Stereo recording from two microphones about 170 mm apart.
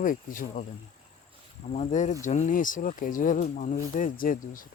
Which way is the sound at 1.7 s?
45° left (ahead or behind).